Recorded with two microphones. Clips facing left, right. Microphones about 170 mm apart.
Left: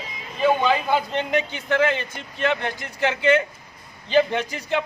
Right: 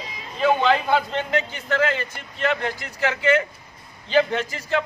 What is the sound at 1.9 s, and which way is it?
A man's voice, 20° left (ahead or behind).